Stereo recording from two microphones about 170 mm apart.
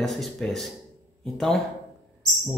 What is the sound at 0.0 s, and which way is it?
Speech, centre (ahead or behind).